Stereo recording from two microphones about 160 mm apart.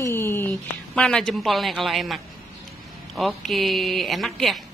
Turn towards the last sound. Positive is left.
turn(degrees=0)  # may be behind; listen again after turning